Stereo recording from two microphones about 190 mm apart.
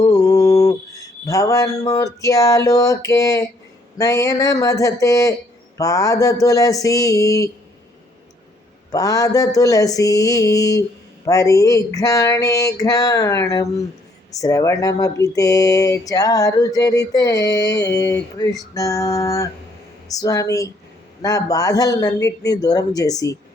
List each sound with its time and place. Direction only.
0.0 s mantra: 20° left (ahead or behind)
1.3 s speech: 15° left (ahead or behind)
8.9 s a man's voice: 20° left (ahead or behind)